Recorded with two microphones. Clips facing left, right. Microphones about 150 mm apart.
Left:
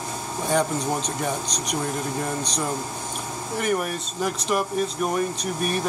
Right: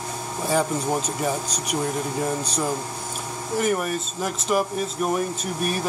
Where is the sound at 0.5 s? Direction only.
Centre (ahead or behind).